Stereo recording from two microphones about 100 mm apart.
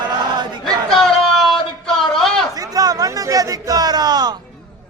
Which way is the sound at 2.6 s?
40° right (ahead or behind).